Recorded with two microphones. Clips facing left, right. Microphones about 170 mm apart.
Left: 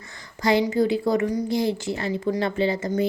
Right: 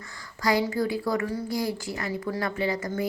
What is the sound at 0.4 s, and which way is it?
A woman's voice, 20° left (ahead or behind).